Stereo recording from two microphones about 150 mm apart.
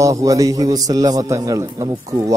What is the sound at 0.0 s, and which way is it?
A man's voice, 20° right (ahead or behind).